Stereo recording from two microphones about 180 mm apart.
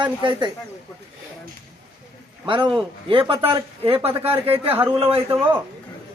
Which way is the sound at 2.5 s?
25° right (ahead or behind).